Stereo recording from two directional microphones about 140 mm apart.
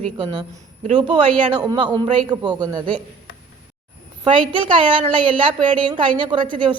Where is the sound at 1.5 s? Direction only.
30° right (ahead or behind).